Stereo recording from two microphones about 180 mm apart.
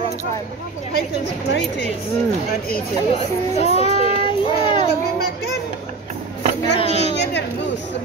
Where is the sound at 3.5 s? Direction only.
35° left (ahead or behind).